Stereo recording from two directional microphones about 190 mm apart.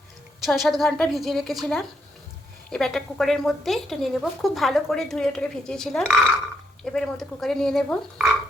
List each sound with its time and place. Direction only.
0.4 s a woman's voice: centre (ahead or behind)